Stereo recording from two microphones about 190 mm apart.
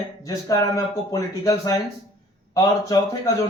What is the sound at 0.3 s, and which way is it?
Speech, 20° left (ahead or behind).